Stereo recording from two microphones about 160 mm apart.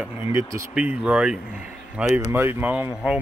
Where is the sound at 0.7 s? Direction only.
5° right (ahead or behind).